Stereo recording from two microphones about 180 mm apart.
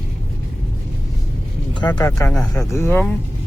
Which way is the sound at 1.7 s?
25° left (ahead or behind).